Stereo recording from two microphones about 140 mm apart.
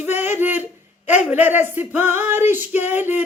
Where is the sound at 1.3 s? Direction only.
15° right (ahead or behind).